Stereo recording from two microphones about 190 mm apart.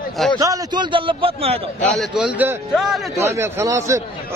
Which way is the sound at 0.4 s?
20° right (ahead or behind).